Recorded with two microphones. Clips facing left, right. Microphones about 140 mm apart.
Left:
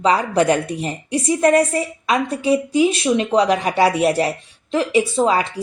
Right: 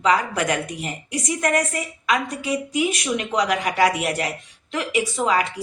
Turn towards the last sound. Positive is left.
turn(degrees=30)  # may be behind; listen again after turning